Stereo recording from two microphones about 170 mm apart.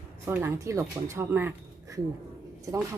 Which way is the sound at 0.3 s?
15° right (ahead or behind).